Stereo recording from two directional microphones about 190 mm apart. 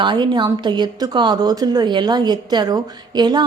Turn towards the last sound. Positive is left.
turn(degrees=-20)  # may be behind; listen again after turning